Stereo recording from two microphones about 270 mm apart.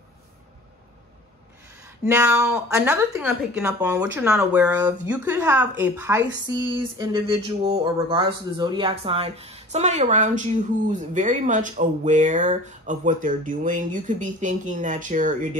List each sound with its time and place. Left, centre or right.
2.0 s speech: centre; by 15.5 s right